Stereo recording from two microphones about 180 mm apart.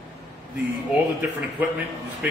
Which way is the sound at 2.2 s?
10° right (ahead or behind).